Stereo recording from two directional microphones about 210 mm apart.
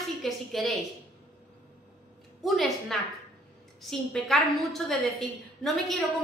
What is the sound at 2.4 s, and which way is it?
A woman's voice, centre (ahead or behind).